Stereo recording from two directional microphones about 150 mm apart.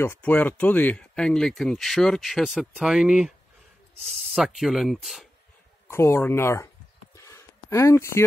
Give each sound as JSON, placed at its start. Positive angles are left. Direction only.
{"t": 0.0, "sound": "speech", "side_deg": 15}
{"t": 5.9, "sound": "speech", "side_deg": 15}
{"t": 7.2, "sound": "a sound", "side_deg": 20}